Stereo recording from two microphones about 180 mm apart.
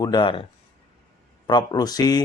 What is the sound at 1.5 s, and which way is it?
Speech, 25° left (ahead or behind).